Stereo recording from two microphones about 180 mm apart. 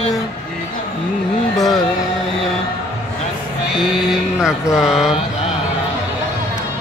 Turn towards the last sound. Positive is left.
turn(degrees=-5)  # may be behind; listen again after turning